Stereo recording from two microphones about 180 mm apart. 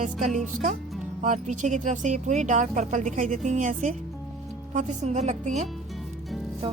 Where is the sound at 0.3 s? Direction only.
45° right (ahead or behind).